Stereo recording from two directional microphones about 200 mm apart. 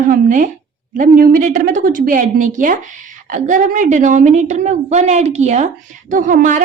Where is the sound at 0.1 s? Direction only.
40° right (ahead or behind).